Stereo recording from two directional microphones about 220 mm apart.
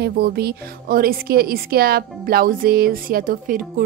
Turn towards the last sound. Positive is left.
turn(degrees=-40)  # may be behind; listen again after turning